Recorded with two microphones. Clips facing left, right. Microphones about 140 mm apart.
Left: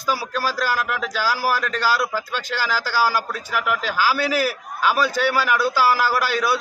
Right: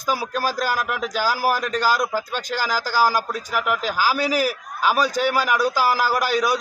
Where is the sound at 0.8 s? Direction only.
5° right (ahead or behind).